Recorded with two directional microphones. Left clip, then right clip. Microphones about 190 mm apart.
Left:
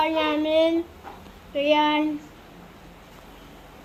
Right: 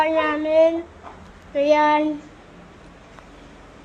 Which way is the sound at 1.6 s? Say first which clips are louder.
Right 4 dB; 10° right (ahead or behind).